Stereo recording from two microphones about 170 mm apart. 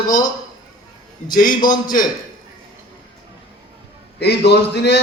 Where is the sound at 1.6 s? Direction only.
25° left (ahead or behind).